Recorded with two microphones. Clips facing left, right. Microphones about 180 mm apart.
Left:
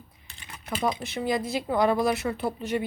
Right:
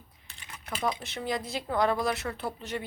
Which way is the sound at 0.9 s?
10° left (ahead or behind).